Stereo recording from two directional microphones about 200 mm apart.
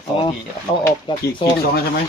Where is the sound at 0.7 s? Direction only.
30° left (ahead or behind).